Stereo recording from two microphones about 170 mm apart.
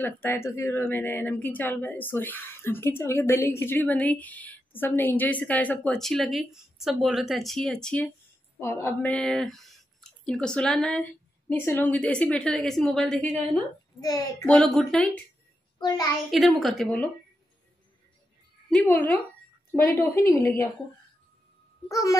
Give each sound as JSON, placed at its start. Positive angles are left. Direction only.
{"t": 0.0, "sound": "a woman's voice", "side_deg": 15}
{"t": 13.9, "sound": "a child's voice", "side_deg": 20}
{"t": 14.4, "sound": "a woman's voice", "side_deg": 5}
{"t": 16.3, "sound": "a woman's voice", "side_deg": 0}
{"t": 18.7, "sound": "a woman's voice", "side_deg": 10}
{"t": 21.8, "sound": "a child's voice", "side_deg": 20}